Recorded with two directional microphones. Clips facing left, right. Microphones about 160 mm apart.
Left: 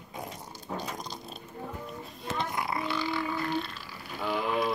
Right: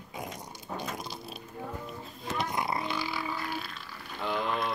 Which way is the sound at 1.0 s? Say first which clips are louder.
Even; 5° right (ahead or behind).